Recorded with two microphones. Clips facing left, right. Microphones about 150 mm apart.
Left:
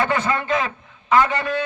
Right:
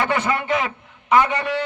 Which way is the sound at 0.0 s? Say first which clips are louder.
Even; 15° right (ahead or behind).